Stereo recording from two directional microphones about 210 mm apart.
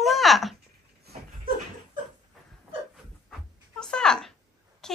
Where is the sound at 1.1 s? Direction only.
45° right (ahead or behind).